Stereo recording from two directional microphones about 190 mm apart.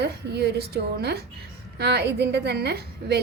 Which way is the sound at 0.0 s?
60° right (ahead or behind).